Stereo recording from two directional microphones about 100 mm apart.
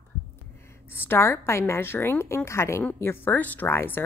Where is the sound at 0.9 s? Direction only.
25° left (ahead or behind).